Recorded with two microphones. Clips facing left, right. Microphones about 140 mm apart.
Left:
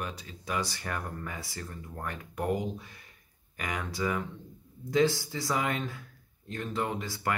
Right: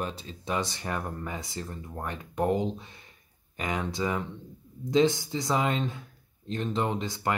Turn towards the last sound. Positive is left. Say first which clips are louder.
# right 3 dB
turn(degrees=-20)  # may be behind; listen again after turning